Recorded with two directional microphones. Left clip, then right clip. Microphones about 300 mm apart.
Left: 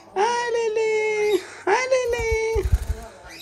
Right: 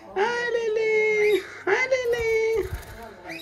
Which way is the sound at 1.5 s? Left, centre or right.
Centre.